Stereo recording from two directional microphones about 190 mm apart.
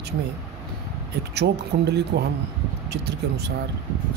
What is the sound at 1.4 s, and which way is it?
Speech, 60° right (ahead or behind).